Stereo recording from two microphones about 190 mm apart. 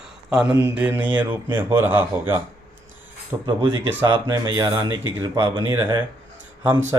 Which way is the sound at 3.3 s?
20° right (ahead or behind).